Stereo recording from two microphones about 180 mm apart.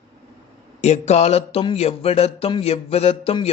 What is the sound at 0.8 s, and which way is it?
A man's voice, 35° left (ahead or behind).